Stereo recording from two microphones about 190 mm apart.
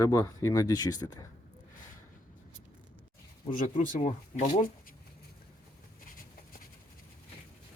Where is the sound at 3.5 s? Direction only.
45° left (ahead or behind).